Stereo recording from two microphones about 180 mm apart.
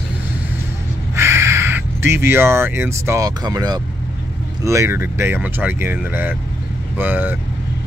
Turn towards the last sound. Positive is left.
turn(degrees=-10)  # may be behind; listen again after turning